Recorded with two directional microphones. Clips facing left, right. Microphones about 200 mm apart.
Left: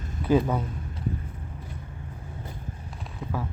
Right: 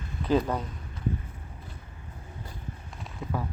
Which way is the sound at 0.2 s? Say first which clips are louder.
Left 3 dB; 5° left (ahead or behind).